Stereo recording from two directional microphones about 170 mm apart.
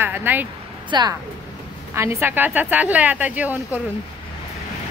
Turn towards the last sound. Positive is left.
turn(degrees=-10)  # may be behind; listen again after turning